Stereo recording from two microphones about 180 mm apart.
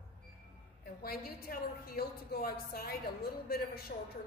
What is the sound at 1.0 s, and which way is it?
A woman's voice, 55° left (ahead or behind).